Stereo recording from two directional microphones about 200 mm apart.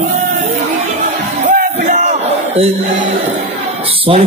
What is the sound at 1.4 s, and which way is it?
Crowd, 40° right (ahead or behind).